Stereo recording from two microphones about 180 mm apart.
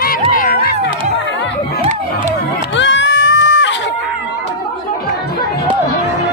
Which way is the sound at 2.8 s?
90° left.